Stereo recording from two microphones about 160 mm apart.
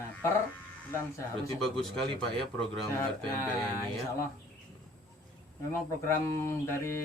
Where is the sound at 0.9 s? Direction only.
20° left (ahead or behind).